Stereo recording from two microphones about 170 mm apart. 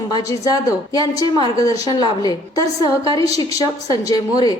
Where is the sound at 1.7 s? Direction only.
35° right (ahead or behind).